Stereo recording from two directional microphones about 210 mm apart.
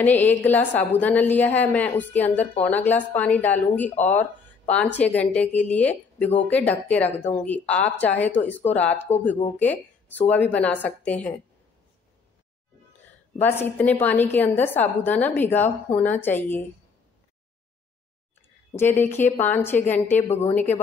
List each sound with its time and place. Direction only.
0.0 s a woman's voice: 10° left (ahead or behind)
13.4 s a woman's voice: 10° left (ahead or behind)
18.8 s a woman's voice: 10° left (ahead or behind)
20.2 s speech: 30° left (ahead or behind)
20.5 s a woman's voice: 10° left (ahead or behind)